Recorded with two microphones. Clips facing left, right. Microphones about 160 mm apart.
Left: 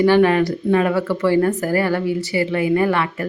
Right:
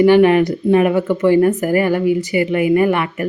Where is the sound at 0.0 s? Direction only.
15° right (ahead or behind).